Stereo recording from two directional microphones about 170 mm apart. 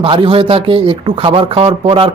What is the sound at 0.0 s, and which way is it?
Speech, 30° right (ahead or behind).